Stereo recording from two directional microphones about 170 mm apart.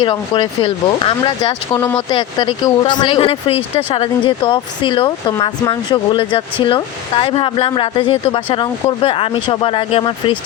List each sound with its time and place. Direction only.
0.0 s speech: 30° left (ahead or behind)